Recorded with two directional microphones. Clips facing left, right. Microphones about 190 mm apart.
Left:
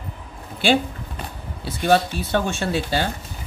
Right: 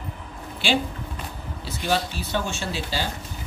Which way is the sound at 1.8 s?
55° left (ahead or behind).